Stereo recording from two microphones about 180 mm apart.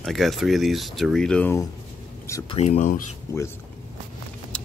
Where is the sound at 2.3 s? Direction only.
20° left (ahead or behind).